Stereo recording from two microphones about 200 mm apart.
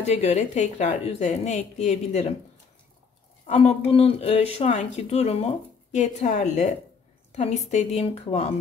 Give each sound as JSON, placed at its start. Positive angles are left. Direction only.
{"t": 0.0, "sound": "speech", "side_deg": 35}
{"t": 3.4, "sound": "speech", "side_deg": 35}